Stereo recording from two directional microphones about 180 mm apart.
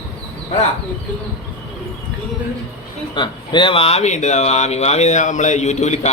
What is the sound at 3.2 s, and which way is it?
Speech, 25° left (ahead or behind).